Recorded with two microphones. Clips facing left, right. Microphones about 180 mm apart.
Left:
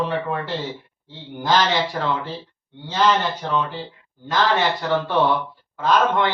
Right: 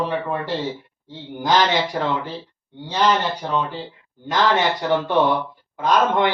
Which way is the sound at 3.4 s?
15° right (ahead or behind).